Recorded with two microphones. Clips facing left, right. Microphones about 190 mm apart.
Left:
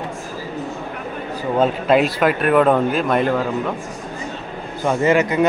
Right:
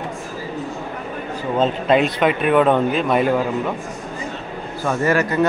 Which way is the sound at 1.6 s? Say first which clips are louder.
Left 1 dB; 5° left (ahead or behind).